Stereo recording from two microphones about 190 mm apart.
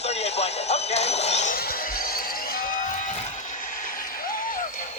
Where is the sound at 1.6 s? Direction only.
50° left (ahead or behind).